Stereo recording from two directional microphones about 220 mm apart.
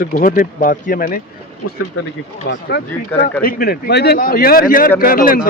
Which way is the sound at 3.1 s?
10° left (ahead or behind).